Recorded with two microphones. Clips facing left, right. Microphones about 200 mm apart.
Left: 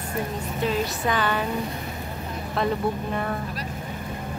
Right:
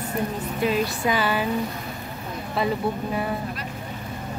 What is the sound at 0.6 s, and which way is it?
Speech, 10° right (ahead or behind).